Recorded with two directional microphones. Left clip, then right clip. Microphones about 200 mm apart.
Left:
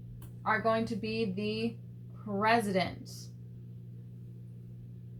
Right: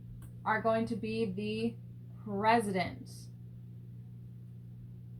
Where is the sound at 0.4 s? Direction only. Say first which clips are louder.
Left 1 dB; 10° left (ahead or behind).